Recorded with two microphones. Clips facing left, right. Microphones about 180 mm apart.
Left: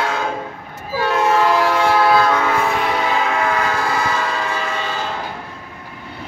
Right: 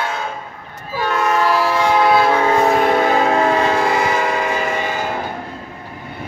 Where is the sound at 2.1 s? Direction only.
25° right (ahead or behind).